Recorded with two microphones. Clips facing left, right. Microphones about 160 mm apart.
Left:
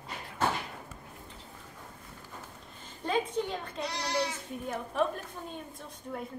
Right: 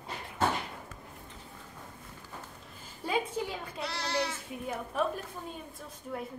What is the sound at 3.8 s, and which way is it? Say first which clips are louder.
Speech: even; 15° left (ahead or behind).